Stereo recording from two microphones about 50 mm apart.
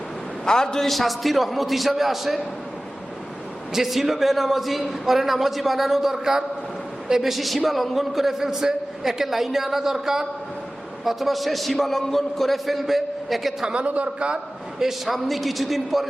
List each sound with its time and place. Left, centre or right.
0.4 s a man's voice: centre
3.7 s a man's voice: centre
13.7 s a man's voice: right
14.8 s a man's voice: centre